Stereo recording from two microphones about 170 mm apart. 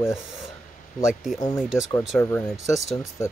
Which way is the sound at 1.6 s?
Centre (ahead or behind).